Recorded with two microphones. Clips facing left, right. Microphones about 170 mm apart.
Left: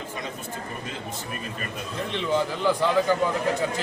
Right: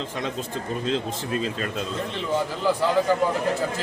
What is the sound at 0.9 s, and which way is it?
Speech, 90° right.